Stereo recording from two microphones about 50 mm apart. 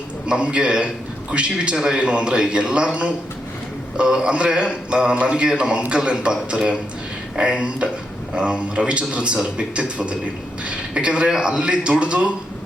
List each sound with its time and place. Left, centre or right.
0.3 s a man's voice: right